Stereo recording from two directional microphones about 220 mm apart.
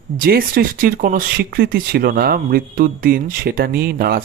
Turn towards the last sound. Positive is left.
turn(degrees=-45)  # may be behind; listen again after turning